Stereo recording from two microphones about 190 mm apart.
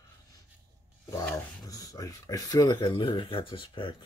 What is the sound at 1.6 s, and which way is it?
Speech, 20° left (ahead or behind).